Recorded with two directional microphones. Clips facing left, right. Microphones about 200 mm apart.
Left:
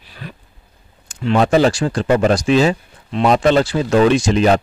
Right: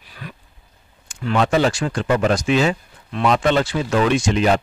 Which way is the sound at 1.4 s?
35° left (ahead or behind).